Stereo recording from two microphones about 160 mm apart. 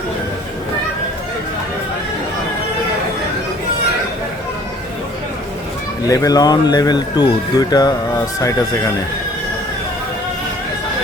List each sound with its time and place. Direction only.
6.1 s speech: 20° left (ahead or behind)